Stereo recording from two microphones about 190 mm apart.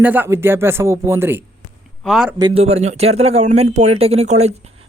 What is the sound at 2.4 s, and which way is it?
Speech, 30° right (ahead or behind).